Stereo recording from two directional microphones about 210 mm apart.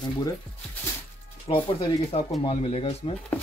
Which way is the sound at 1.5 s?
25° left (ahead or behind).